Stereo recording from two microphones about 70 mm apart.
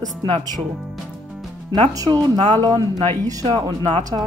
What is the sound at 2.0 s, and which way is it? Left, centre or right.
Speech, right.